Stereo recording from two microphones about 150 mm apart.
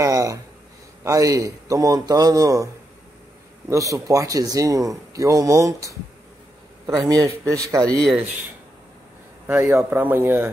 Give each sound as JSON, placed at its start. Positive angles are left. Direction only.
{"t": 0.0, "sound": "a sound", "side_deg": -20}
{"t": 1.0, "sound": "speech", "side_deg": -20}
{"t": 7.9, "sound": "speech", "side_deg": 0}
{"t": 9.5, "sound": "speech", "side_deg": -15}